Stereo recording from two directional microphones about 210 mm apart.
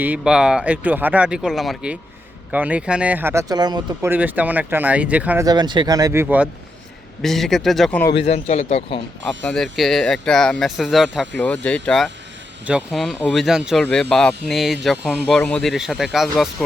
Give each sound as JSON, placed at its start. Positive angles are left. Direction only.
{"t": 0.0, "sound": "speech", "side_deg": -5}
{"t": 5.5, "sound": "speech", "side_deg": -20}
{"t": 6.2, "sound": "speech", "side_deg": -5}
{"t": 8.1, "sound": "speech", "side_deg": 30}
{"t": 9.2, "sound": "speech", "side_deg": 5}